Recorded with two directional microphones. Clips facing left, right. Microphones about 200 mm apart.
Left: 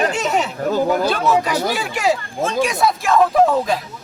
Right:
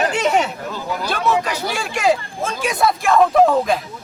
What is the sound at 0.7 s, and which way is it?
Speech, 50° left (ahead or behind).